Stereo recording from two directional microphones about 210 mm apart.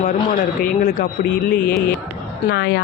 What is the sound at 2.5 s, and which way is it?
Speech, 50° left (ahead or behind).